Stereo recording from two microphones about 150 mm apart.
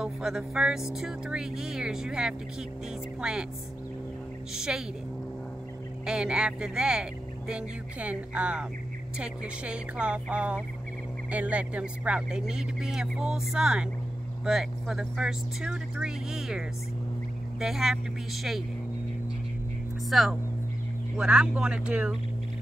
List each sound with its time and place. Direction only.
0.0 s speech: 5° right (ahead or behind)
4.6 s speech: 5° right (ahead or behind)
6.0 s speech: 5° right (ahead or behind)
20.1 s speech: centre (ahead or behind)